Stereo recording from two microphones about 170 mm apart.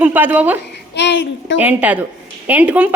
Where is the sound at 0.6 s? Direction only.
90° left.